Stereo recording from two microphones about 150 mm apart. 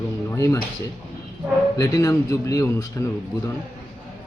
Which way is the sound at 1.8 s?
25° left (ahead or behind).